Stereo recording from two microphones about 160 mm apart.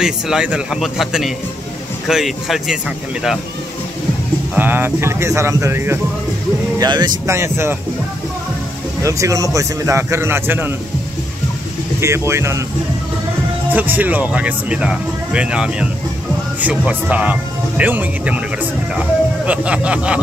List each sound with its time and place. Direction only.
0.0 s speech: 5° right (ahead or behind)
4.6 s speech: 10° right (ahead or behind)
9.0 s speech: 20° right (ahead or behind)
12.0 s speech: 15° right (ahead or behind)
13.7 s speech: 10° right (ahead or behind)